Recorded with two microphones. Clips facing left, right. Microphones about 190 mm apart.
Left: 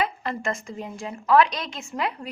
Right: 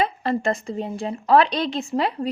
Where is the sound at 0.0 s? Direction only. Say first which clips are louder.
Right 5 dB; 35° right (ahead or behind).